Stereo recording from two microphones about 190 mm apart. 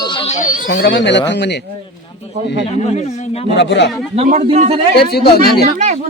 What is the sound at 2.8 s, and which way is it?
Speech, 35° left (ahead or behind).